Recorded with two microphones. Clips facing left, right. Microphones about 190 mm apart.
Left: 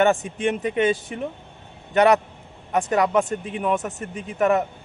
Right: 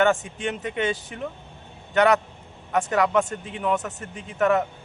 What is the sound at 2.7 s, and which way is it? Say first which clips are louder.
A man's voice: left 1 dB; 20° left (ahead or behind).